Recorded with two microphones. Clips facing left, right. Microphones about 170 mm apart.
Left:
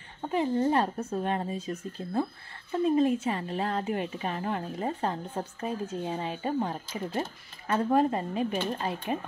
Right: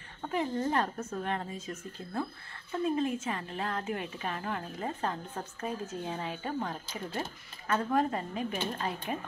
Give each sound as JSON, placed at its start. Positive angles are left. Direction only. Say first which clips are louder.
{"t": 0.2, "sound": "a woman's voice", "louder": "left 5 dB", "side_deg": 25}